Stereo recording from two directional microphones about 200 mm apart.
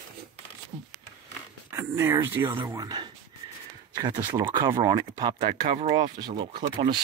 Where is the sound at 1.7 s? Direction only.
15° right (ahead or behind).